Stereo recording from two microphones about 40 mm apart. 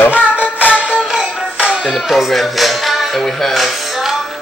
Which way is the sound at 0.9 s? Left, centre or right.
Right.